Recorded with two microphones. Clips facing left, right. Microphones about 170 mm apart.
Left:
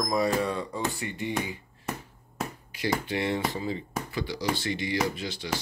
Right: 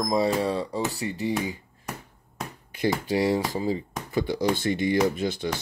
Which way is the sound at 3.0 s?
35° right (ahead or behind).